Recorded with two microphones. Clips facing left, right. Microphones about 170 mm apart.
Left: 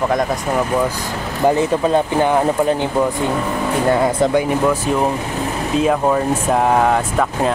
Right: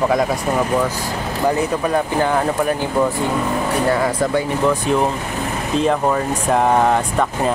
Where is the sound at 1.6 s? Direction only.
25° left (ahead or behind).